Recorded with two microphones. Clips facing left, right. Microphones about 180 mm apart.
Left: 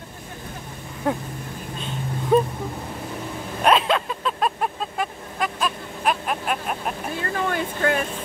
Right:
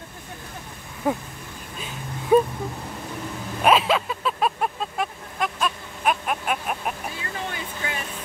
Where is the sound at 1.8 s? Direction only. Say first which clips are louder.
Left 4 dB; 5° right (ahead or behind).